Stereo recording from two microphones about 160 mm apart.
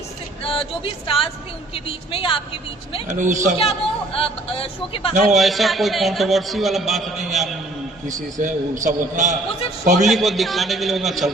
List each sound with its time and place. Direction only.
1.0 s a man's voice: 35° left (ahead or behind)
3.1 s a man's voice: 50° right (ahead or behind)
3.6 s a man's voice: 35° left (ahead or behind)
5.3 s a man's voice: centre (ahead or behind)
8.0 s a man's voice: 55° right (ahead or behind)
10.1 s a man's voice: centre (ahead or behind)